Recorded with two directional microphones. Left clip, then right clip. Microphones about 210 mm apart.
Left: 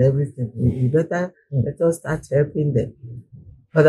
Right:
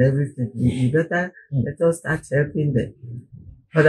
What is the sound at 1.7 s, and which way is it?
Speech, 40° left (ahead or behind).